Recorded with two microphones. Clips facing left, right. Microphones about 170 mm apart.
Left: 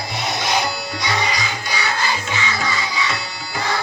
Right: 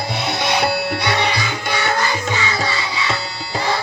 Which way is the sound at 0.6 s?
65° right (ahead or behind).